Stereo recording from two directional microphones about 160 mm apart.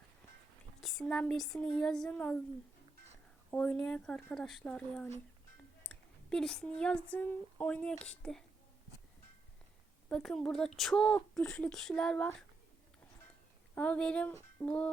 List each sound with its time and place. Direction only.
0.8 s speech: centre (ahead or behind)
3.5 s speech: 5° left (ahead or behind)
10.1 s speech: 5° left (ahead or behind)
13.7 s speech: 10° left (ahead or behind)